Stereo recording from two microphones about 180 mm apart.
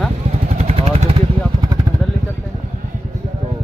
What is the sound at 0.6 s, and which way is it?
Vehicle, 35° right (ahead or behind).